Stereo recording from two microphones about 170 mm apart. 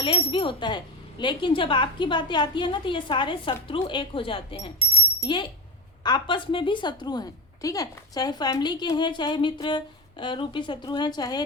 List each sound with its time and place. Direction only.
0.0 s a woman's voice: 30° left (ahead or behind)